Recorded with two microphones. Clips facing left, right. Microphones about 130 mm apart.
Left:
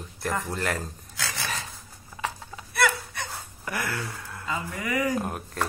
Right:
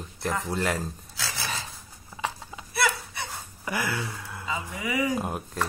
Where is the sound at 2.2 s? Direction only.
5° right (ahead or behind).